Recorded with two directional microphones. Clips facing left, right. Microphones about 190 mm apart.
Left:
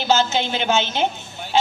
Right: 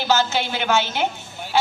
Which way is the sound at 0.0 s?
20° left (ahead or behind).